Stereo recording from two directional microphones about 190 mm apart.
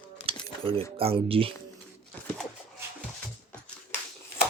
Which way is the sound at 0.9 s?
30° right (ahead or behind).